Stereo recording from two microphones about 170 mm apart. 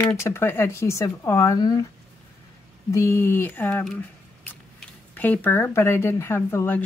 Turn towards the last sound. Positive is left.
turn(degrees=10)  # may be behind; listen again after turning